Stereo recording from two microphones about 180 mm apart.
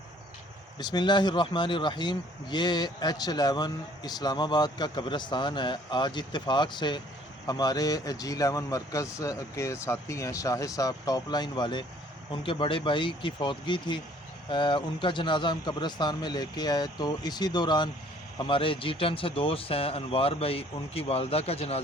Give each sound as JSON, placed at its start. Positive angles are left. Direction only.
{"t": 0.8, "sound": "speech", "side_deg": 25}